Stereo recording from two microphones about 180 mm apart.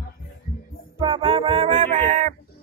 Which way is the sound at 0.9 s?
25° right (ahead or behind).